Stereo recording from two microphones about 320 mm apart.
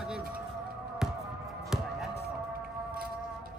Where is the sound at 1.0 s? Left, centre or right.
Centre.